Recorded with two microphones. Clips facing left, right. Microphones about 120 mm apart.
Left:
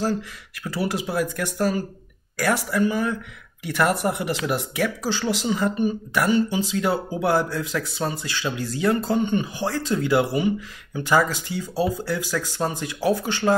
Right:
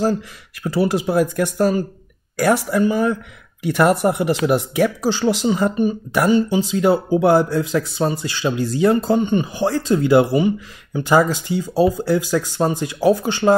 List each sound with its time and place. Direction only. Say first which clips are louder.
0.7 s speech: right 7 dB; 30° right (ahead or behind)